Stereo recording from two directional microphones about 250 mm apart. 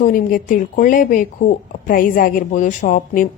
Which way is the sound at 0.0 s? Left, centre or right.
Left.